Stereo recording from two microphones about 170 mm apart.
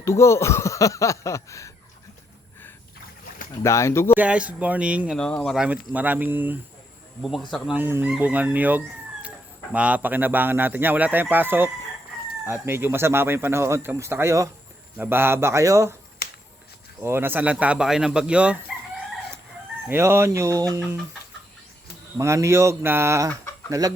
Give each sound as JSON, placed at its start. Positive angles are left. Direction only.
{"t": 0.0, "sound": "speech", "side_deg": 15}
{"t": 3.6, "sound": "speech", "side_deg": 15}
{"t": 4.2, "sound": "speech", "side_deg": -10}
{"t": 5.1, "sound": "speech", "side_deg": 5}
{"t": 5.5, "sound": "speech", "side_deg": -5}
{"t": 7.2, "sound": "speech", "side_deg": 0}
{"t": 17.0, "sound": "speech", "side_deg": -15}
{"t": 19.9, "sound": "speech", "side_deg": -15}
{"t": 22.2, "sound": "speech", "side_deg": -15}